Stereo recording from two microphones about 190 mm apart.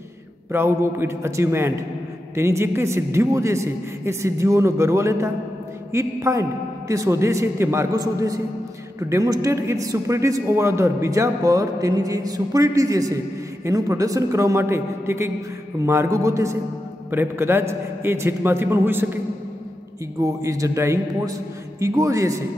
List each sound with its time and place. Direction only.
0.5 s a man's voice: 15° right (ahead or behind)
20.2 s a man's voice: 20° right (ahead or behind)